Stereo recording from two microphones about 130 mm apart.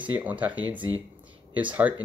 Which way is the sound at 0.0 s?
10° right (ahead or behind).